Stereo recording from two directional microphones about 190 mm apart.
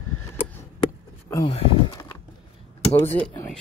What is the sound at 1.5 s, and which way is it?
Speech, 25° left (ahead or behind).